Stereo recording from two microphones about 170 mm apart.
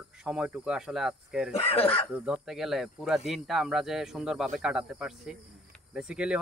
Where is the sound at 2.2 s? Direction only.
5° right (ahead or behind).